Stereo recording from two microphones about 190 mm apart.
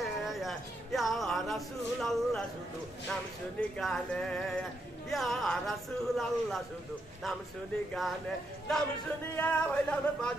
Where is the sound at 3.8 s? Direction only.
5° left (ahead or behind).